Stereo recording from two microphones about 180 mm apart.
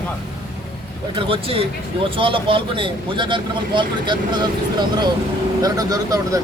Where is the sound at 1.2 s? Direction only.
30° right (ahead or behind).